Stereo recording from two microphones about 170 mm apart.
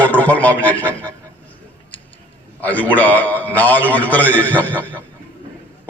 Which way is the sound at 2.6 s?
10° left (ahead or behind).